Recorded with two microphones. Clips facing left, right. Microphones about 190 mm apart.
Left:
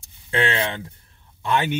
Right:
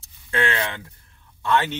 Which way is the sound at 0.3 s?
20° left (ahead or behind).